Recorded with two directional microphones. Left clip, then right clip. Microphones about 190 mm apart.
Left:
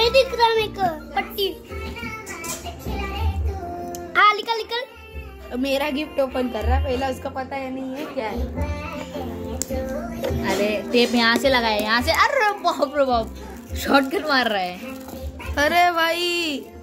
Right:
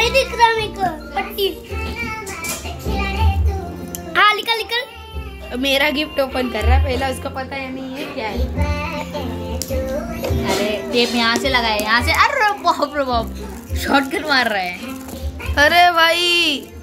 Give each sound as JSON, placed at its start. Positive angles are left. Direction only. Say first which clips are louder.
{"t": 0.0, "sound": "children playing", "louder": "right 2 dB", "side_deg": 30}
{"t": 4.1, "sound": "a sound", "louder": "right 3 dB", "side_deg": 15}
{"t": 5.5, "sound": "a woman's voice", "louder": "right 6 dB", "side_deg": 0}
{"t": 7.3, "sound": "a woman's voice", "louder": "right 2 dB", "side_deg": 20}
{"t": 10.4, "sound": "a child's voice", "louder": "right 2 dB", "side_deg": 55}
{"t": 15.5, "sound": "a woman's voice", "louder": "right 6 dB", "side_deg": 15}